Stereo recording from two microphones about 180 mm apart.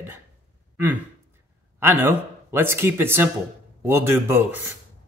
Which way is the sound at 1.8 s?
10° right (ahead or behind).